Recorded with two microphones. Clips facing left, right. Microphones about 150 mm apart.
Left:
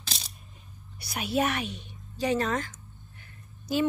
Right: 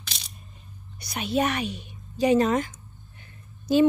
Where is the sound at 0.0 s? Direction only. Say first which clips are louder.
Left 2 dB; 35° left (ahead or behind).